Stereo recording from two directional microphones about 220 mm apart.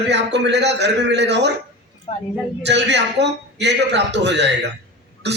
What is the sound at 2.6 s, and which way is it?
A man's voice, 50° right (ahead or behind).